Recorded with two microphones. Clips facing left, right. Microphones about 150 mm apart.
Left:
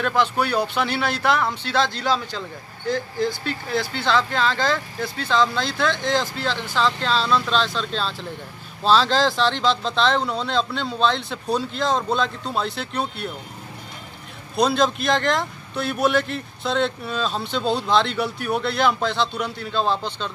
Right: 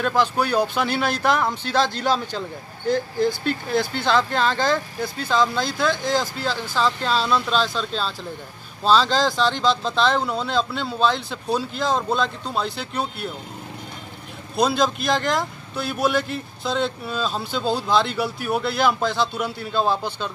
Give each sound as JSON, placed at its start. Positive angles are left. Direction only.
{"t": 0.0, "sound": "speech", "side_deg": -10}
{"t": 3.3, "sound": "speech", "side_deg": -50}
{"t": 4.0, "sound": "a man's voice", "side_deg": -10}
{"t": 14.5, "sound": "a man's voice", "side_deg": 0}